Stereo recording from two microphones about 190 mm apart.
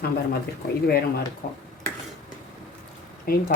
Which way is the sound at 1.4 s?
45° left (ahead or behind).